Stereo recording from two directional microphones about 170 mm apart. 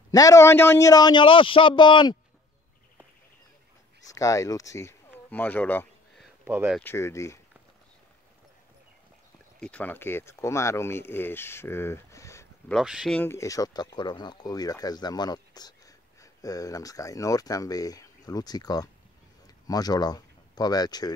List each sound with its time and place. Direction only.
0.1 s speech: 20° left (ahead or behind)
4.1 s speech: 20° left (ahead or behind)
6.4 s speech: 10° right (ahead or behind)
6.8 s speech: 15° left (ahead or behind)
9.6 s speech: 10° left (ahead or behind)
12.7 s speech: centre (ahead or behind)
13.2 s speech: 15° left (ahead or behind)